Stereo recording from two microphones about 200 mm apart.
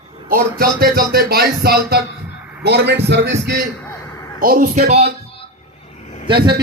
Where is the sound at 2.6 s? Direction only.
55° right (ahead or behind).